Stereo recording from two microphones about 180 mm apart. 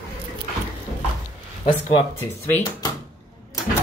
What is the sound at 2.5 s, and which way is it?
Speech, 20° left (ahead or behind).